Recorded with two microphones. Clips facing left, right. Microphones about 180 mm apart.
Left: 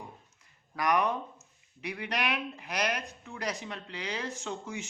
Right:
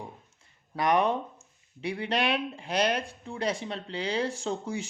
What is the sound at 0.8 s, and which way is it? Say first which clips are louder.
Speech: right 3 dB; 30° right (ahead or behind).